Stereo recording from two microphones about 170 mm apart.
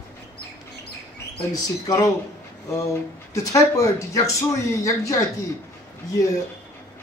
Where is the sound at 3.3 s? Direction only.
20° left (ahead or behind).